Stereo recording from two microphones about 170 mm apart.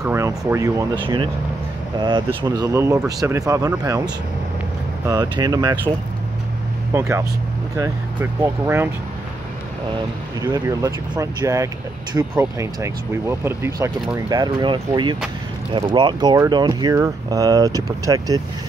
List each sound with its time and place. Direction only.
0.0 s a sound: 15° right (ahead or behind)
0.5 s speech: 20° right (ahead or behind)
1.0 s speech: 30° right (ahead or behind)
5.0 s speech: 25° right (ahead or behind)
6.9 s speech: 15° right (ahead or behind)
10.4 s speech: 20° right (ahead or behind)